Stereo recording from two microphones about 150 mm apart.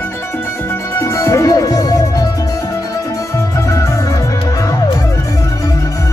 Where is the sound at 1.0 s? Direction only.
20° left (ahead or behind).